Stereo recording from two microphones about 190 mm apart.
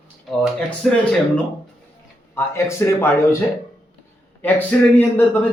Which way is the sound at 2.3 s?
15° left (ahead or behind).